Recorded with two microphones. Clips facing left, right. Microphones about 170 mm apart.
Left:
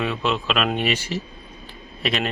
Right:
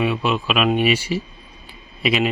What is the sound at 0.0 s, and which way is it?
Speech, 10° right (ahead or behind).